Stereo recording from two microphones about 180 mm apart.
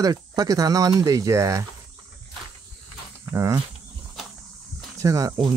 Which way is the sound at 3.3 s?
15° right (ahead or behind).